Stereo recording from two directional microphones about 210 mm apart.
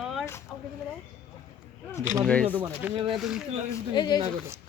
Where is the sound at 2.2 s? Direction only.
5° left (ahead or behind).